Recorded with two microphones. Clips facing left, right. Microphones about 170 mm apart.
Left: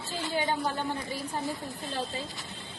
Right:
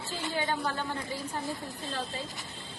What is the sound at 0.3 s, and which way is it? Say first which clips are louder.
A woman's voice: left 2 dB; 15° left (ahead or behind).